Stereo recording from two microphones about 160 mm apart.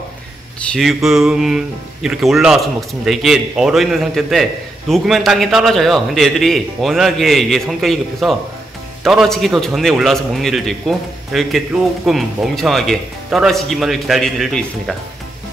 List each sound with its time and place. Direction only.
0.7 s a man's voice: centre (ahead or behind)